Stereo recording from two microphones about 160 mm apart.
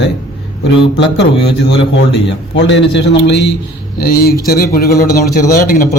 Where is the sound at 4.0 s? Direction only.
70° left (ahead or behind).